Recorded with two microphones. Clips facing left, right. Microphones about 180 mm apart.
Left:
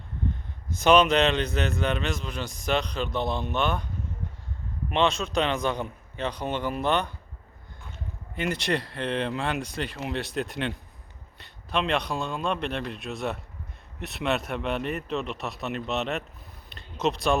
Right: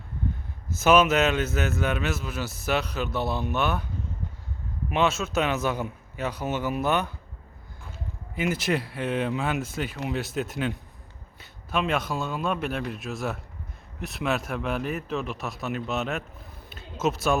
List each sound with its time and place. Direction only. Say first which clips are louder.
0.7 s a man's voice: even; 5° right (ahead or behind)
4.9 s a man's voice: even; 5° right (ahead or behind)
16.6 s a sound: even; 5° right (ahead or behind)